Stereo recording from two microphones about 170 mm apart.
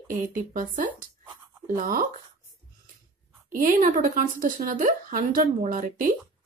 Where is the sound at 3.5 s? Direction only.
50° right (ahead or behind).